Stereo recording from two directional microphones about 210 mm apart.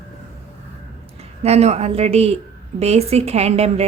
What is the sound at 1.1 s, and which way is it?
A woman's voice, 30° right (ahead or behind).